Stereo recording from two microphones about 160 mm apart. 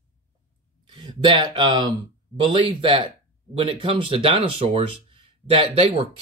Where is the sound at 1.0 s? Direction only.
30° right (ahead or behind).